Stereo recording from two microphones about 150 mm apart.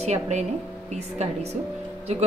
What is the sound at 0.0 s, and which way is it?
A woman's voice, 50° right (ahead or behind).